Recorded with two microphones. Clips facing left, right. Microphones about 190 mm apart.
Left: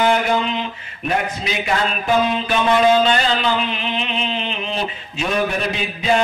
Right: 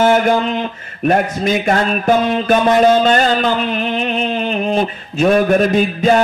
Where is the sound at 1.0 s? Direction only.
50° right (ahead or behind).